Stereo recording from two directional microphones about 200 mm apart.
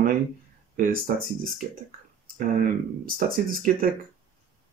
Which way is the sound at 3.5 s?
45° right (ahead or behind).